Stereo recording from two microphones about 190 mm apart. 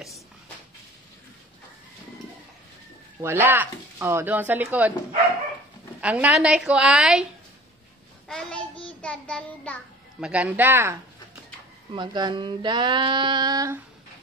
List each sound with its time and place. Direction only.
3.2 s speech: 10° right (ahead or behind)
5.9 s a woman's voice: 5° right (ahead or behind)
8.3 s child singing: 5° left (ahead or behind)
10.2 s speech: 5° right (ahead or behind)
11.9 s female singing: 25° right (ahead or behind)